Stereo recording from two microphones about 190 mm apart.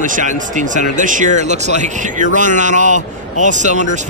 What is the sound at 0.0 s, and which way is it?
Speech, 40° right (ahead or behind).